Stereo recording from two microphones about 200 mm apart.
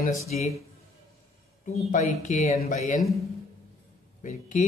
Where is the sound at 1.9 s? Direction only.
35° left (ahead or behind).